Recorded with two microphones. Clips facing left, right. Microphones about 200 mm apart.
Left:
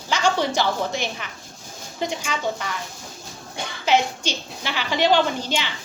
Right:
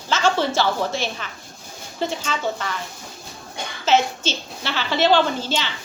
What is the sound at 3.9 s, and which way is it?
A woman's voice, 15° left (ahead or behind).